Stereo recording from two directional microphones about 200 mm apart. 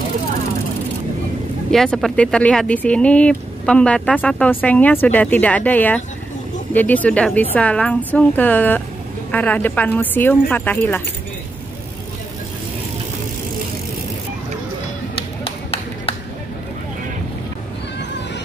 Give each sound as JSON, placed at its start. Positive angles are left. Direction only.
{"t": 1.7, "sound": "speech", "side_deg": 0}
{"t": 15.4, "sound": "clapping", "side_deg": 30}